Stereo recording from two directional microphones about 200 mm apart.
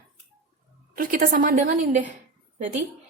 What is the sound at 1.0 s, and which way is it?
A woman's voice, 45° right (ahead or behind).